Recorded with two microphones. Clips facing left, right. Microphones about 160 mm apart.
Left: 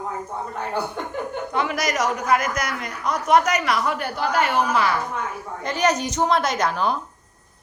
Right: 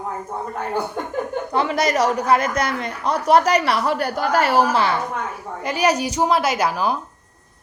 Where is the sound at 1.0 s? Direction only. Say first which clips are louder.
Right 3 dB; 45° right (ahead or behind).